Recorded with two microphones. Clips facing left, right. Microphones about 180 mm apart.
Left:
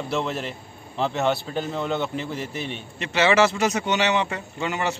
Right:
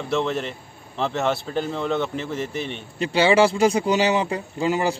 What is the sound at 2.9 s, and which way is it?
A man's voice, 30° right (ahead or behind).